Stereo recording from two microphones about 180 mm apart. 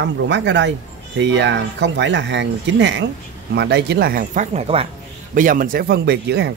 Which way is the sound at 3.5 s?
65° right (ahead or behind).